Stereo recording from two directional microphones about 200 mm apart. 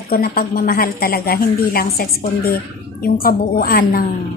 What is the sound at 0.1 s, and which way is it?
A woman's voice, 50° left (ahead or behind).